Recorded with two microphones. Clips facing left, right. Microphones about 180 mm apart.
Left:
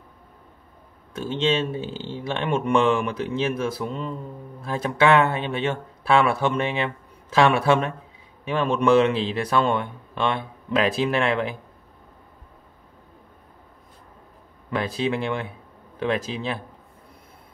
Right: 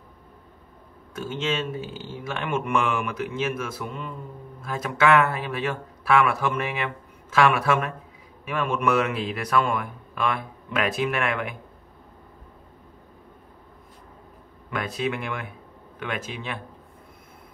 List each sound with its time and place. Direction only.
1.1 s speech: 30° left (ahead or behind)
14.7 s speech: 30° left (ahead or behind)